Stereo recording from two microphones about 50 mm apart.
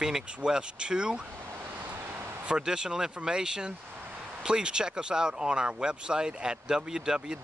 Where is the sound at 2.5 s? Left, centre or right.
Centre.